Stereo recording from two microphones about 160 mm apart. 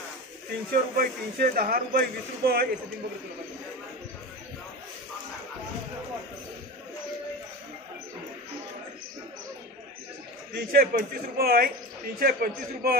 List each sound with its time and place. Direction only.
0.7 s a man's voice: 65° right (ahead or behind)
10.5 s a man's voice: 70° right (ahead or behind)